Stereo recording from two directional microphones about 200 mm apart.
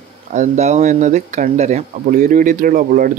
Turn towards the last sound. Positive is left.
turn(degrees=-45)  # may be behind; listen again after turning